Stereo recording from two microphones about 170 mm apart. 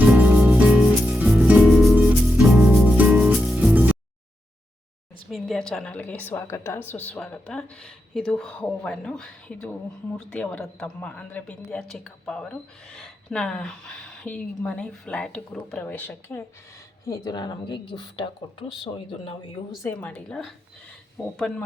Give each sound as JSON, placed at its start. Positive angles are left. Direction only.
{"t": 0.0, "sound": "music", "side_deg": -10}
{"t": 5.3, "sound": "speech", "side_deg": 5}
{"t": 17.1, "sound": "speech", "side_deg": 25}
{"t": 19.8, "sound": "speech", "side_deg": 10}